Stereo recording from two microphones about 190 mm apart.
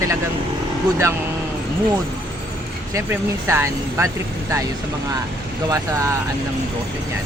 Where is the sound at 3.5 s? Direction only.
15° right (ahead or behind).